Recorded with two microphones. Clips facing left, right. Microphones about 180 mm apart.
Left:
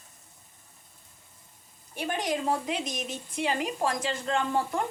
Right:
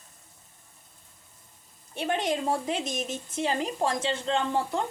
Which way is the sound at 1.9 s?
25° right (ahead or behind).